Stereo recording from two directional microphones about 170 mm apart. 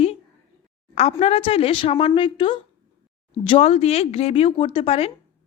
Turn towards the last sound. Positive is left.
turn(degrees=35)  # may be behind; listen again after turning